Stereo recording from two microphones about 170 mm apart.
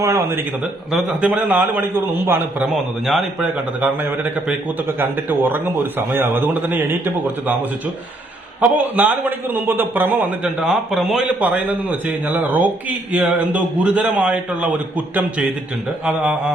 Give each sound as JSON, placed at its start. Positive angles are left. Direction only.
{"t": 0.0, "sound": "a man's voice", "side_deg": -15}
{"t": 0.9, "sound": "a man's voice", "side_deg": 0}
{"t": 8.6, "sound": "a man's voice", "side_deg": -10}